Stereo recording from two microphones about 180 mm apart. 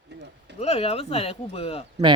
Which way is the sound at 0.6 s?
35° left (ahead or behind).